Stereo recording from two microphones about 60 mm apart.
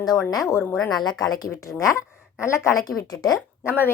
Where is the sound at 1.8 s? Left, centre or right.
Left.